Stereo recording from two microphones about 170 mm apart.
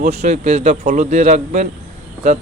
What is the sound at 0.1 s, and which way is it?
A man's voice, 40° right (ahead or behind).